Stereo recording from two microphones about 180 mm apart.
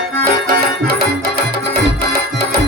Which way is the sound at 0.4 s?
60° right (ahead or behind).